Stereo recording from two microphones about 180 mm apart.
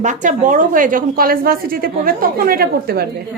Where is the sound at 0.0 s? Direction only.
45° right (ahead or behind).